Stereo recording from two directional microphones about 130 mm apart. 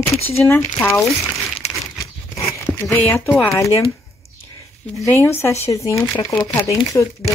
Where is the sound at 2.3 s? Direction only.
20° left (ahead or behind).